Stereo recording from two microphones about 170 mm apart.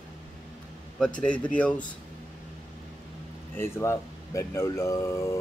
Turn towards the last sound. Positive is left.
turn(degrees=20)  # may be behind; listen again after turning